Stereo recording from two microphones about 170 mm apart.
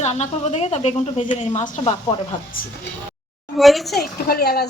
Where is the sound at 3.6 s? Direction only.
Centre (ahead or behind).